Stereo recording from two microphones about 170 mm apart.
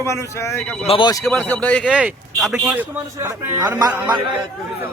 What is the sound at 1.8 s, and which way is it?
Speech, 5° right (ahead or behind).